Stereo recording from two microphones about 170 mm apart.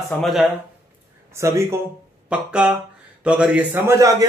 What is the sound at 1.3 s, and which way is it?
A man's voice, 15° right (ahead or behind).